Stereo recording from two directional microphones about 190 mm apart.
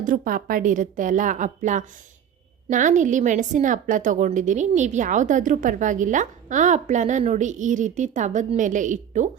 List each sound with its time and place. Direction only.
0.0 s a woman's voice: 45° right (ahead or behind)